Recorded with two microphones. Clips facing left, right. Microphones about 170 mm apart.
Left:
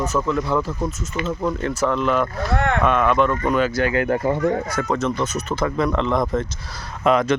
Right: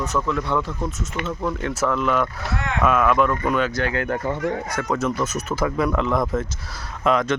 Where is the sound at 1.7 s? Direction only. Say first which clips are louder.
Left 1 dB; centre (ahead or behind).